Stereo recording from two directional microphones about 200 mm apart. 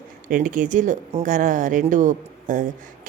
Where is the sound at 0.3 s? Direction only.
40° right (ahead or behind).